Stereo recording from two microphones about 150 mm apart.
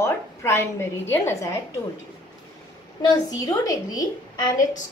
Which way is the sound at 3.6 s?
25° left (ahead or behind).